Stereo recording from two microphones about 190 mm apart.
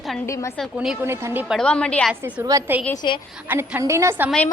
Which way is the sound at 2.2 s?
15° right (ahead or behind).